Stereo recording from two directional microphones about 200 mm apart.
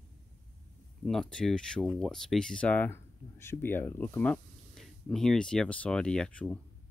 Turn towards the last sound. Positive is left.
turn(degrees=5)  # may be behind; listen again after turning